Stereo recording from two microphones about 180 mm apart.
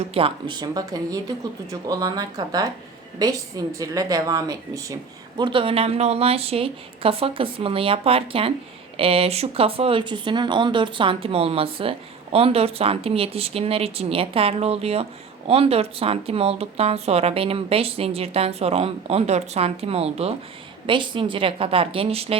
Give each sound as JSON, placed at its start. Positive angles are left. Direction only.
{"t": 0.0, "sound": "a woman's voice", "side_deg": -30}
{"t": 3.8, "sound": "a woman's voice", "side_deg": -20}
{"t": 5.4, "sound": "a woman's voice", "side_deg": -30}